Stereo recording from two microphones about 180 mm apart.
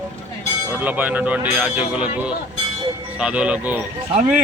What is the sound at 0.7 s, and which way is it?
Speech, 10° right (ahead or behind).